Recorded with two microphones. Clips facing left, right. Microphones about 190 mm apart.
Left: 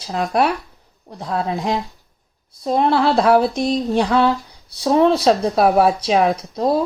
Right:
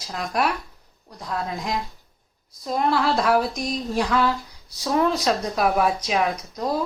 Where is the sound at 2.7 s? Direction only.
30° left (ahead or behind).